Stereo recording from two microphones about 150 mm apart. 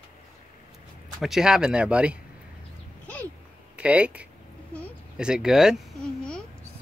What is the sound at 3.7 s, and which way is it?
A child's voice, 10° right (ahead or behind).